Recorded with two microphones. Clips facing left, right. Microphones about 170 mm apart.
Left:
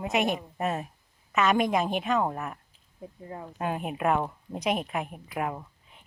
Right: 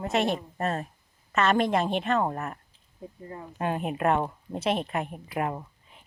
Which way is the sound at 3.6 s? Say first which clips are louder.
Right 2 dB; 5° left (ahead or behind).